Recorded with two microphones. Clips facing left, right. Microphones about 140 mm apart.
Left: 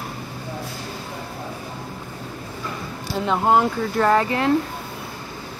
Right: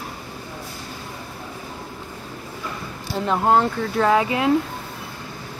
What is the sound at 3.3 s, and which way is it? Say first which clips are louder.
Speech: even; centre (ahead or behind).